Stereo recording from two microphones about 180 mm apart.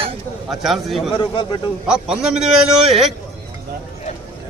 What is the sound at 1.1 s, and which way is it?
Speech, 30° left (ahead or behind).